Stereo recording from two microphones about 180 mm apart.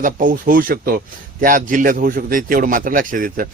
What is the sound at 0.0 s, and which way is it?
Speech, 50° right (ahead or behind).